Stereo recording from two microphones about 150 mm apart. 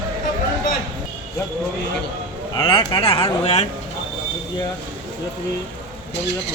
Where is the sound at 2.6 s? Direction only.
35° left (ahead or behind).